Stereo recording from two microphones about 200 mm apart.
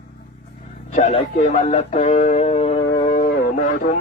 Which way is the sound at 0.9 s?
35° left (ahead or behind).